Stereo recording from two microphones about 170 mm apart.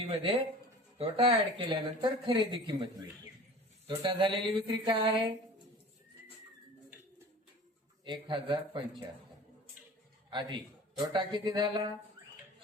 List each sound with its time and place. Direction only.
0.0 s speech: 35° right (ahead or behind)
8.0 s speech: 25° right (ahead or behind)
10.2 s speech: 25° right (ahead or behind)